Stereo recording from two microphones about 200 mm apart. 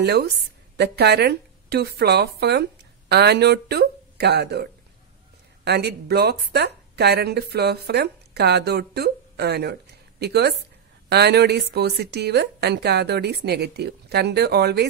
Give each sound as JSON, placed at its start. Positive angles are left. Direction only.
{"t": 0.0, "sound": "a woman's voice", "side_deg": -55}